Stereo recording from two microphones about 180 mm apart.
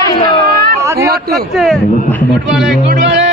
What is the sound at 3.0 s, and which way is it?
Music, 80° right.